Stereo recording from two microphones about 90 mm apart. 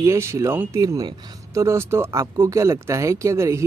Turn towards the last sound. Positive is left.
turn(degrees=-35)  # may be behind; listen again after turning